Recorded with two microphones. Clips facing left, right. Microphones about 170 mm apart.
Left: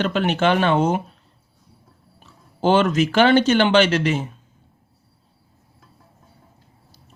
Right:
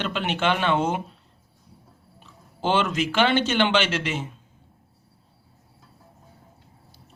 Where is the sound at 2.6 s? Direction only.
40° left (ahead or behind).